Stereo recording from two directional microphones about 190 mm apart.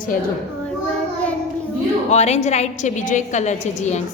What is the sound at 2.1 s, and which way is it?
A woman's voice, 35° left (ahead or behind).